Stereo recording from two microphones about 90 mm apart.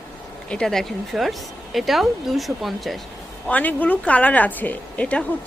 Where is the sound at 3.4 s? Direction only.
20° left (ahead or behind).